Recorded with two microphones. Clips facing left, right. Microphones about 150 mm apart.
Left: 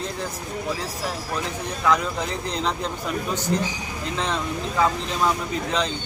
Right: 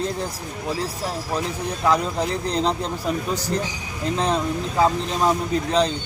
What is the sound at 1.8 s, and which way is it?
Speech, 35° right (ahead or behind).